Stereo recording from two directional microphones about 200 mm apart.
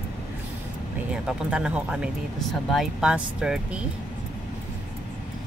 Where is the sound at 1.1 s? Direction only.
5° right (ahead or behind).